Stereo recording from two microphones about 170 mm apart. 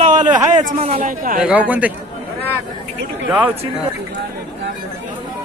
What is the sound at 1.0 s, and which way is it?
Speech, 55° right (ahead or behind).